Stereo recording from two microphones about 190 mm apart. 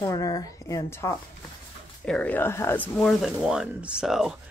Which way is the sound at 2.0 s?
5° left (ahead or behind).